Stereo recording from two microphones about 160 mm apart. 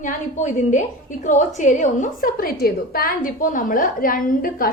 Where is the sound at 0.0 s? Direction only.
50° left (ahead or behind).